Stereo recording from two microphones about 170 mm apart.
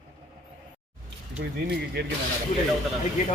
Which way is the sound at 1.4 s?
70° right (ahead or behind).